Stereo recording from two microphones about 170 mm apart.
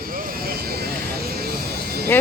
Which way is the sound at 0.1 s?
55° right (ahead or behind).